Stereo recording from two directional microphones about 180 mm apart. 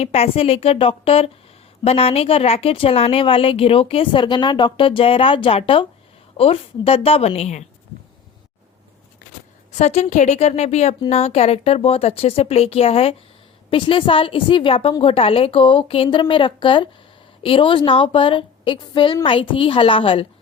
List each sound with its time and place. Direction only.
0.0 s speech: 35° left (ahead or behind)
9.7 s a woman's voice: 40° left (ahead or behind)